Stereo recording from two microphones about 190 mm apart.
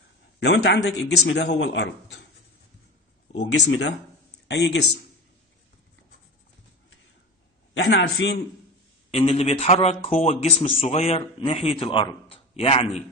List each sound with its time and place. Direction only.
0.4 s speech: 65° left (ahead or behind)
3.4 s speech: 80° left
4.5 s speech: 65° left (ahead or behind)
7.7 s speech: 75° left (ahead or behind)
9.1 s speech: 30° left (ahead or behind)